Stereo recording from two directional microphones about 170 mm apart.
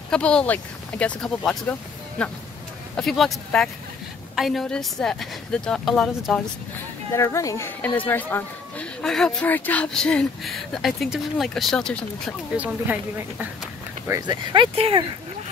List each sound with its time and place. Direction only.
0.1 s speech: 5° left (ahead or behind)
7.1 s a child's voice: 15° left (ahead or behind)
12.5 s a woman's voice: 10° right (ahead or behind)
14.0 s speech: 20° right (ahead or behind)